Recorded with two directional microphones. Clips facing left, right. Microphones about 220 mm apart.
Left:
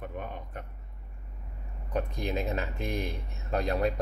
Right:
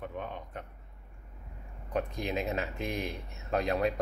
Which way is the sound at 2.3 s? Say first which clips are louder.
Left 1 dB; centre (ahead or behind).